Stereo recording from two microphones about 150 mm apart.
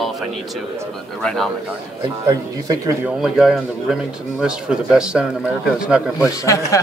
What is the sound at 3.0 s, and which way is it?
Speech, 5° right (ahead or behind).